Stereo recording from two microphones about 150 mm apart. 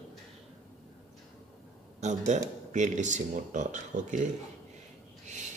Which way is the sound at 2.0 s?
50° right (ahead or behind).